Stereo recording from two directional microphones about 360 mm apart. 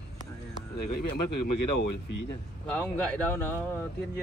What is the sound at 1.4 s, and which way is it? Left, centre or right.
Speech, left.